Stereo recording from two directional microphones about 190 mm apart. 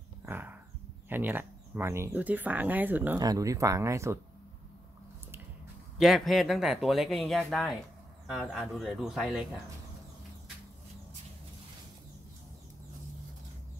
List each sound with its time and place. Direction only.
0.2 s a sound: 10° right (ahead or behind)
1.0 s speech: 10° right (ahead or behind)
5.9 s speech: centre (ahead or behind)